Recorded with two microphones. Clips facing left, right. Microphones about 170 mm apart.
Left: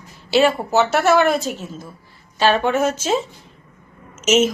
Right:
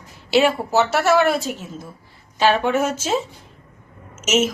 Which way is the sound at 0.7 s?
5° right (ahead or behind).